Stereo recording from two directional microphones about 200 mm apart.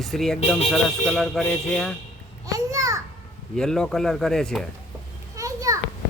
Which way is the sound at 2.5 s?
15° right (ahead or behind).